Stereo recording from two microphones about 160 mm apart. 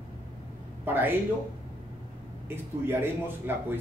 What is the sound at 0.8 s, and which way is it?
Speech, 10° right (ahead or behind).